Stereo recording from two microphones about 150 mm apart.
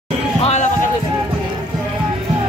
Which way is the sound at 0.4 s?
45° left (ahead or behind).